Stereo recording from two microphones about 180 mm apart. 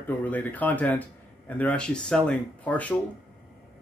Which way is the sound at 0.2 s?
10° left (ahead or behind).